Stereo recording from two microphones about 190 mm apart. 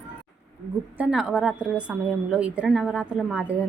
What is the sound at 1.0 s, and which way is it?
A woman's voice, 5° right (ahead or behind).